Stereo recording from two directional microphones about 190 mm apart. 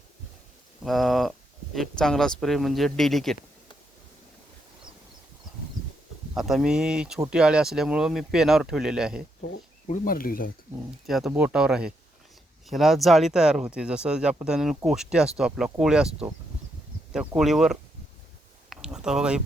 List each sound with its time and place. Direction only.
0.9 s speech: centre (ahead or behind)
6.3 s speech: centre (ahead or behind)
9.8 s speech: 45° left (ahead or behind)
11.0 s speech: centre (ahead or behind)
18.7 s a sound: 5° right (ahead or behind)